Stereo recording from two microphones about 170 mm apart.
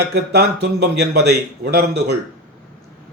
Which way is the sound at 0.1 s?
75° right (ahead or behind).